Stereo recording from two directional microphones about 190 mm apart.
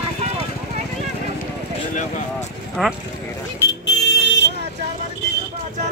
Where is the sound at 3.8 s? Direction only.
65° left (ahead or behind).